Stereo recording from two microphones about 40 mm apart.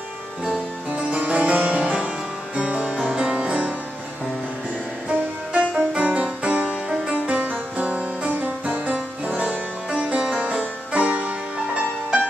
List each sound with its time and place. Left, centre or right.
0.8 s harpsichord: right
2.5 s music: right
5.1 s music: right
10.3 s music: right
11.5 s music: right